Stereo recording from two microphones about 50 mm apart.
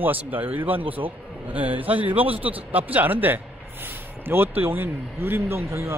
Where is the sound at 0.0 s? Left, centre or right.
Right.